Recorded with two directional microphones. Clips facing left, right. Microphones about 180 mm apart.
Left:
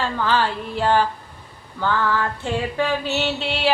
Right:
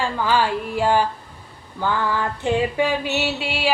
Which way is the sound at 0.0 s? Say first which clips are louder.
Right 1 dB; 10° right (ahead or behind).